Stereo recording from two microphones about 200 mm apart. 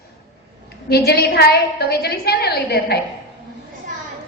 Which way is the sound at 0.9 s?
50° left (ahead or behind).